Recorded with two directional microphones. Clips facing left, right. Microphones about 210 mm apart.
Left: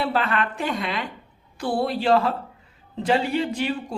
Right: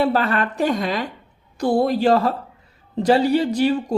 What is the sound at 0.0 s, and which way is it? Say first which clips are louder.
A woman's voice: right 5 dB; 40° right (ahead or behind).